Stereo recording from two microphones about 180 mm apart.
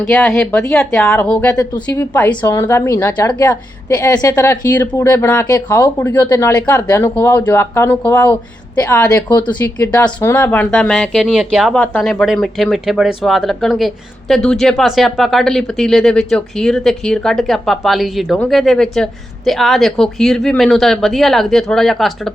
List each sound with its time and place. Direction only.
0.0 s a woman's voice: 5° left (ahead or behind)
11.8 s speech: 10° left (ahead or behind)
12.2 s speech: centre (ahead or behind)